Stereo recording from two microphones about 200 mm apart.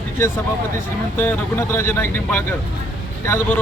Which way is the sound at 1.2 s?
10° left (ahead or behind).